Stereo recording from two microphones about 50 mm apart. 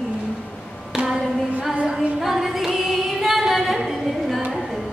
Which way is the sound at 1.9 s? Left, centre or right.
Centre.